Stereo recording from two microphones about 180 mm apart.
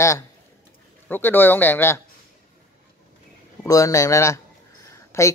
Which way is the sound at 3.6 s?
15° left (ahead or behind).